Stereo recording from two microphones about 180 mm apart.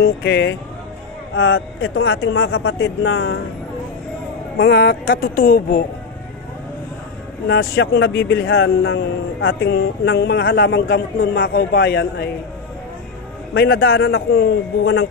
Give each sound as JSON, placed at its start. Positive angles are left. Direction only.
{"t": 0.0, "sound": "speech", "side_deg": 65}
{"t": 1.3, "sound": "a man's voice", "side_deg": 90}
{"t": 4.6, "sound": "speech", "side_deg": 60}
{"t": 7.4, "sound": "speech", "side_deg": 65}
{"t": 9.5, "sound": "a man's voice", "side_deg": 65}
{"t": 13.5, "sound": "a man's voice", "side_deg": 75}